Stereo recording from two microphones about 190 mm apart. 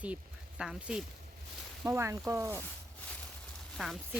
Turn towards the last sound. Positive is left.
turn(degrees=0)  # may be behind; listen again after turning